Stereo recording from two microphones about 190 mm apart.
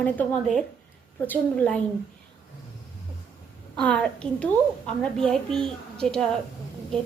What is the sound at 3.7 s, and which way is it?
A woman's voice, 5° left (ahead or behind).